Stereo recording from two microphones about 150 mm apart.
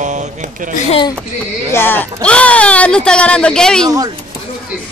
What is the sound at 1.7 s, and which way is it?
Speech, 15° left (ahead or behind).